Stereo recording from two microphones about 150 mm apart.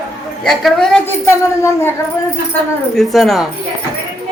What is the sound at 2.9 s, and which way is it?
Speech, centre (ahead or behind).